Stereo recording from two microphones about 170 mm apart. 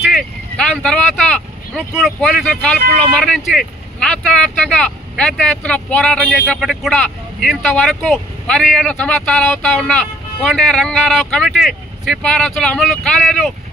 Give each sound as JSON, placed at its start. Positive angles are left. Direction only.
{"t": 0.0, "sound": "vehicle", "side_deg": 0}
{"t": 2.0, "sound": "speech", "side_deg": 0}